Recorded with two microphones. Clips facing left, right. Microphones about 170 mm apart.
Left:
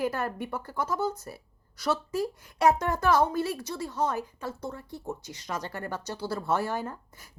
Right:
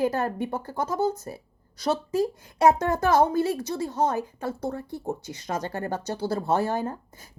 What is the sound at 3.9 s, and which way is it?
Speech, 45° right (ahead or behind).